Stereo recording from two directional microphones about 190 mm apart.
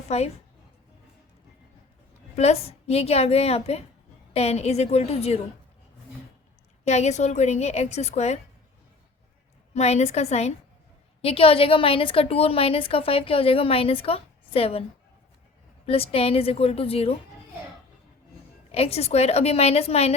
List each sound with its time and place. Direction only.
0.1 s a woman's voice: 35° left (ahead or behind)
2.3 s a woman's voice: 35° left (ahead or behind)
6.8 s a woman's voice: 35° left (ahead or behind)
9.7 s a woman's voice: 35° left (ahead or behind)
15.9 s a woman's voice: 30° left (ahead or behind)
18.7 s a woman's voice: 30° left (ahead or behind)